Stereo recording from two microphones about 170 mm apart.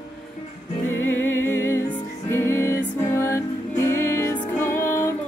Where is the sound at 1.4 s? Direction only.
15° left (ahead or behind).